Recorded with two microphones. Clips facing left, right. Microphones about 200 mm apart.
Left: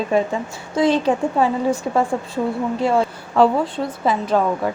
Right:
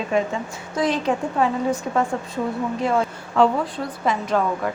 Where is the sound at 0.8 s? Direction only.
30° left (ahead or behind).